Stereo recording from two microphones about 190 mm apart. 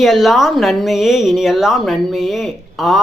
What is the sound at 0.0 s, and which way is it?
Speech, centre (ahead or behind).